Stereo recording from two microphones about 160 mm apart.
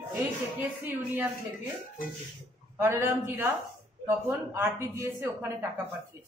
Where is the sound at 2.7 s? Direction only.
15° right (ahead or behind).